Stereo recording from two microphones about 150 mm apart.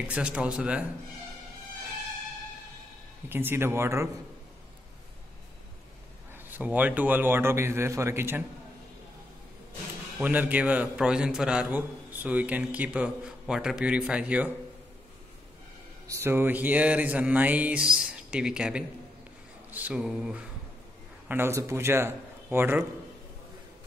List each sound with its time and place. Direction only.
0.1 s a man's voice: 5° right (ahead or behind)
3.3 s a man's voice: 15° right (ahead or behind)
6.3 s a man's voice: 10° right (ahead or behind)
10.1 s a man's voice: 10° right (ahead or behind)
16.1 s a man's voice: 15° right (ahead or behind)
19.7 s mantra: 10° right (ahead or behind)
21.3 s a man's voice: 15° right (ahead or behind)